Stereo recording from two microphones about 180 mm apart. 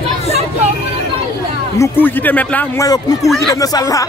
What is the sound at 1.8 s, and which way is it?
Speech, 10° left (ahead or behind).